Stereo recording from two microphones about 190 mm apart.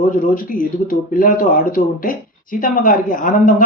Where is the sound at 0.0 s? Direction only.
45° left (ahead or behind).